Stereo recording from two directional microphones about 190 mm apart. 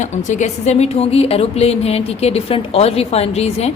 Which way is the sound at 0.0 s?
40° left (ahead or behind).